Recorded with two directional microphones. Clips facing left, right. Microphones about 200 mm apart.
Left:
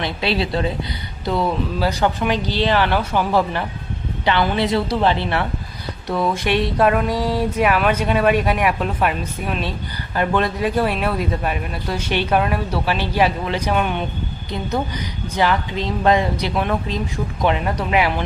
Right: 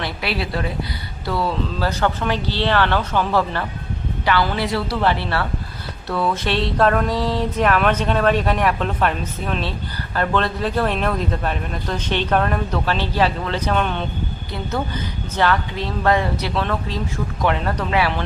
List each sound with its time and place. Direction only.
0.0 s a woman's voice: 25° left (ahead or behind)